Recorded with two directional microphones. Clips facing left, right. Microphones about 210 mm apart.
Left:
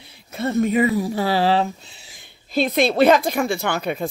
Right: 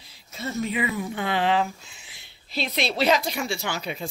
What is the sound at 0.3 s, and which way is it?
Speech, 60° left (ahead or behind).